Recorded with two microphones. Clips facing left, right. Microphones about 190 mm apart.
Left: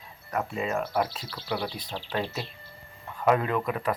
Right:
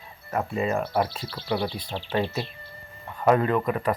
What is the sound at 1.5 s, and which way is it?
Speech, 25° right (ahead or behind).